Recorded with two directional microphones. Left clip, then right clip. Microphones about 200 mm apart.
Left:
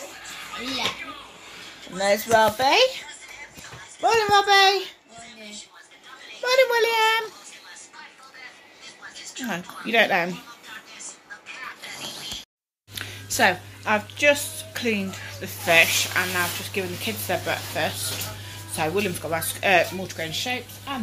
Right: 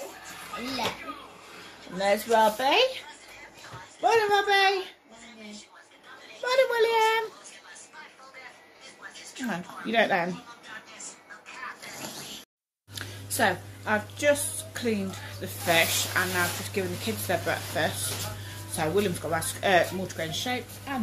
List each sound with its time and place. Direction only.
2.0 s speech: 25° left (ahead or behind)
4.0 s speech: 25° left (ahead or behind)
6.4 s a child's voice: 15° left (ahead or behind)
9.5 s a child's voice: 15° left (ahead or behind)
13.4 s a woman's voice: 15° left (ahead or behind); by 21.0 s 5° right (ahead or behind)